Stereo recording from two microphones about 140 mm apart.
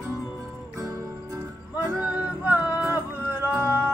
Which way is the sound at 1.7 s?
15° right (ahead or behind).